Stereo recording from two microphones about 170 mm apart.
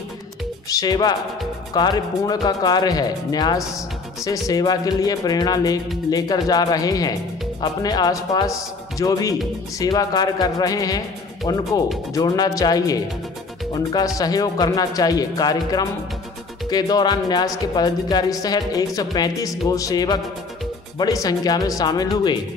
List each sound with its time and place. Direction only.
0.7 s speech: 20° left (ahead or behind)